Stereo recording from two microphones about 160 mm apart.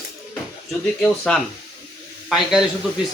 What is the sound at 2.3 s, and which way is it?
Speech, 5° right (ahead or behind).